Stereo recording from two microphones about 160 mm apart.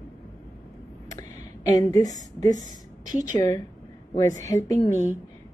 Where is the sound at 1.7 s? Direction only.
20° left (ahead or behind).